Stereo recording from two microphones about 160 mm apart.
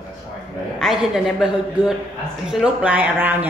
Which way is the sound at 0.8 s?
Centre (ahead or behind).